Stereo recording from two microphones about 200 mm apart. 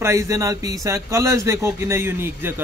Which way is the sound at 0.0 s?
15° right (ahead or behind).